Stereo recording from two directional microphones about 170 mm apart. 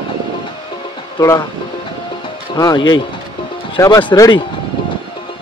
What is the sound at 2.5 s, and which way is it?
Speech, 25° left (ahead or behind).